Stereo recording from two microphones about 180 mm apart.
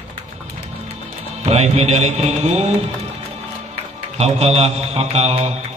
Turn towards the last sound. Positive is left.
turn(degrees=-40)  # may be behind; listen again after turning